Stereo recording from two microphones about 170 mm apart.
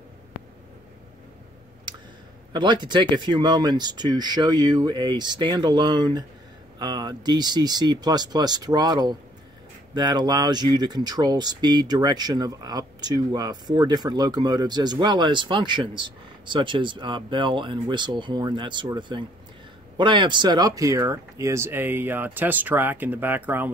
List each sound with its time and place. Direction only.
2.5 s speech: 25° right (ahead or behind); by 23.7 s 10° right (ahead or behind)